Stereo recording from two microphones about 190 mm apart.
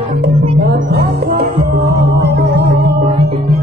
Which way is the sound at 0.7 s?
55° right (ahead or behind).